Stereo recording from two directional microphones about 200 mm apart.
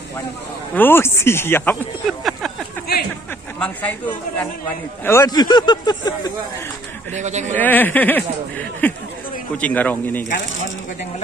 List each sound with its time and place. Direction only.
0.7 s speech: 10° left (ahead or behind)
2.0 s a sound: centre (ahead or behind)
3.5 s a man's voice: 5° left (ahead or behind)
7.2 s a man's voice: 35° right (ahead or behind)
7.5 s speech: 10° left (ahead or behind)